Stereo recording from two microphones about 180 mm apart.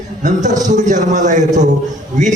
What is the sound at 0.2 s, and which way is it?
A man's voice, 45° right (ahead or behind).